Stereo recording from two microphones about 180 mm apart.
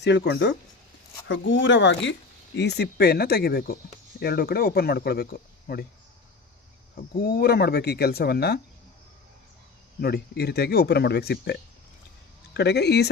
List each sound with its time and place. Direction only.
0.0 s speech: 70° left (ahead or behind)
1.3 s speech: 90° left
2.6 s speech: 65° left (ahead or behind)
6.9 s speech: 55° left (ahead or behind)
10.0 s speech: 60° left (ahead or behind)
12.5 s speech: 65° left (ahead or behind)